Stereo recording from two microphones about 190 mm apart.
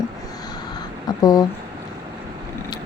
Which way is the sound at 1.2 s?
20° left (ahead or behind).